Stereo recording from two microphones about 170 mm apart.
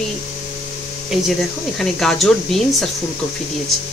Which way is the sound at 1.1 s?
Centre (ahead or behind).